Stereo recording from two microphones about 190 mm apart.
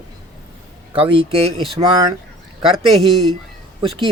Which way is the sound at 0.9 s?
30° right (ahead or behind).